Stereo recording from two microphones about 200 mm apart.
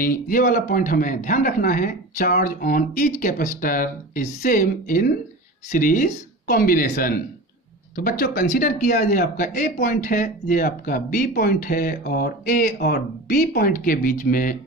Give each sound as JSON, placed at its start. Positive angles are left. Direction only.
{"t": 0.0, "sound": "speech", "side_deg": 45}